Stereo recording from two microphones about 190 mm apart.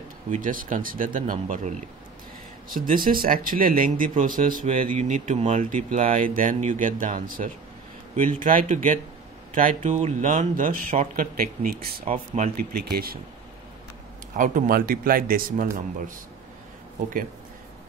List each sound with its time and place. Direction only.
0.3 s speech: 45° right (ahead or behind)
2.7 s speech: 45° right (ahead or behind)
12.4 s speech: 40° right (ahead or behind)
12.8 s speech: 55° right (ahead or behind)
14.3 s speech: 45° right (ahead or behind)